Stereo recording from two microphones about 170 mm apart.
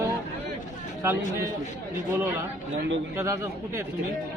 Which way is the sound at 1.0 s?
15° right (ahead or behind).